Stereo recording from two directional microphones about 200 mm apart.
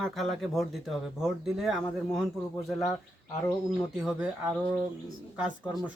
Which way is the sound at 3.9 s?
5° right (ahead or behind).